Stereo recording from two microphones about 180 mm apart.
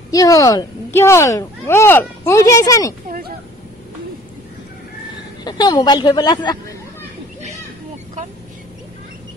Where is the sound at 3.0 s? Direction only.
50° right (ahead or behind).